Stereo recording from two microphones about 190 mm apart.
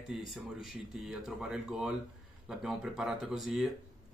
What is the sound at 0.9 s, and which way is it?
Speech, centre (ahead or behind).